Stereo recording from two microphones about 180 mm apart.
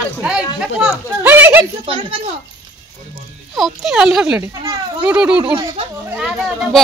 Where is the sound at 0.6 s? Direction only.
5° right (ahead or behind).